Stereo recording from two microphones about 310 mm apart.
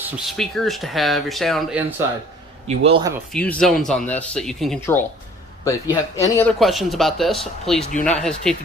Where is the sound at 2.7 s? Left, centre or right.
Centre.